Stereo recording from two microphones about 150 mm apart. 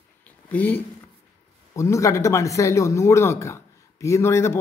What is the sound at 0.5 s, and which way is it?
A man's voice, 10° left (ahead or behind).